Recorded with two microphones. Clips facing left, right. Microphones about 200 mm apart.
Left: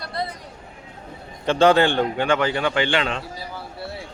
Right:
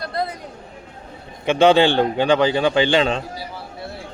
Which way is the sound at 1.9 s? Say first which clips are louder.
Right 4 dB; 30° right (ahead or behind).